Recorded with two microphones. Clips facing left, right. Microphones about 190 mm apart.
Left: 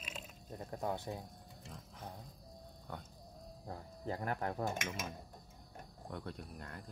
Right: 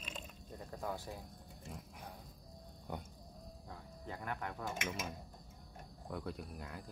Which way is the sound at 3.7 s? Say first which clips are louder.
Left 7 dB; 40° left (ahead or behind).